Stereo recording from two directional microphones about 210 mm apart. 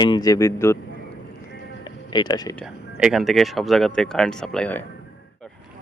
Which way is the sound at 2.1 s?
20° left (ahead or behind).